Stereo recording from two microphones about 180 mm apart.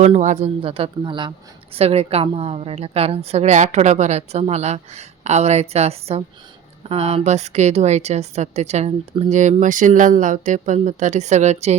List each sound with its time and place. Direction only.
0.0 s a woman's voice: 40° right (ahead or behind)